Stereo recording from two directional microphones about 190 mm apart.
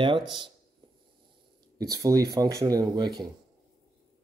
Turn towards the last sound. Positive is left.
turn(degrees=-20)  # may be behind; listen again after turning